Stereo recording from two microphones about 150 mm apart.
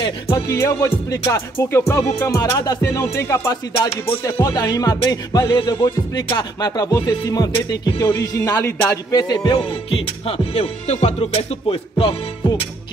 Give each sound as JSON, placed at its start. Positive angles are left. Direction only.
{"t": 0.5, "sound": "music", "side_deg": 20}
{"t": 9.8, "sound": "music", "side_deg": 40}